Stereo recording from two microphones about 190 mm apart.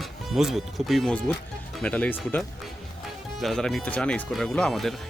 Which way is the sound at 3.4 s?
Centre (ahead or behind).